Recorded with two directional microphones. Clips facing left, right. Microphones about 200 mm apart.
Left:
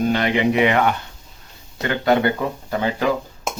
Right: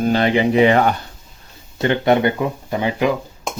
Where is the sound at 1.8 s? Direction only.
25° right (ahead or behind).